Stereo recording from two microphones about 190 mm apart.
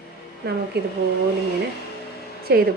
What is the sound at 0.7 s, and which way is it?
Speech, 60° right (ahead or behind).